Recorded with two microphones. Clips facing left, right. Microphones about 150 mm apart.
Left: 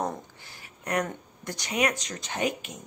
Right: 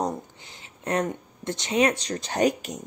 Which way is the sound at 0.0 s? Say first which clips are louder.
Right 3 dB; 20° right (ahead or behind).